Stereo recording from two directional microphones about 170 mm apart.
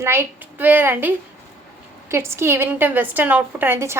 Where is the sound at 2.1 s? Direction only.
15° right (ahead or behind).